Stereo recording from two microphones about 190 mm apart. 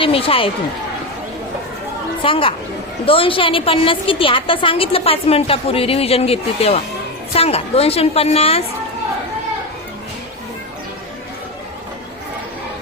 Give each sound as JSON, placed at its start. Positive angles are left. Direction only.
{"t": 0.0, "sound": "a woman's voice", "side_deg": 30}
{"t": 2.2, "sound": "a woman's voice", "side_deg": 30}